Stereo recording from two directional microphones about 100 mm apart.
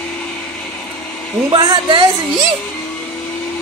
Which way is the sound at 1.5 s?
40° right (ahead or behind).